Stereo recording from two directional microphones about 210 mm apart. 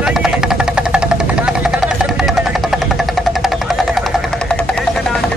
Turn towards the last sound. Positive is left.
turn(degrees=0)  # may be behind; listen again after turning